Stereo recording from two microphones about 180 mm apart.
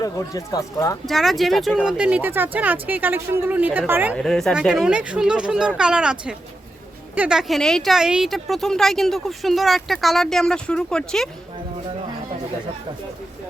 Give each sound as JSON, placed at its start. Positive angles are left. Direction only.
{"t": 0.0, "sound": "speech", "side_deg": 20}
{"t": 1.0, "sound": "a woman's voice", "side_deg": 0}
{"t": 4.1, "sound": "speech", "side_deg": 5}